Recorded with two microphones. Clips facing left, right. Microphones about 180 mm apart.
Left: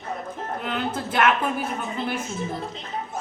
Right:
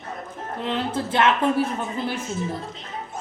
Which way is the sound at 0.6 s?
30° right (ahead or behind).